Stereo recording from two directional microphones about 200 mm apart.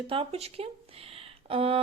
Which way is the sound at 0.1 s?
30° right (ahead or behind).